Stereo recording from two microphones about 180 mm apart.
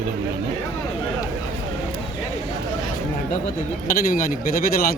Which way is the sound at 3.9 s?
50° left (ahead or behind).